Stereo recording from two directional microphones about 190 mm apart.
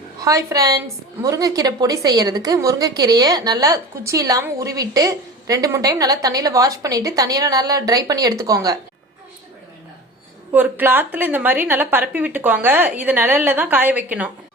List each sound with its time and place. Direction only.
0.2 s a woman's voice: 15° right (ahead or behind)
10.5 s a woman's voice: 10° right (ahead or behind)